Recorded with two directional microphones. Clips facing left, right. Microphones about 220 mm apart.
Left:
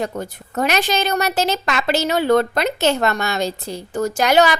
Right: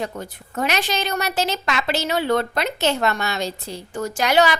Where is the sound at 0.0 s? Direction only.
40° left (ahead or behind).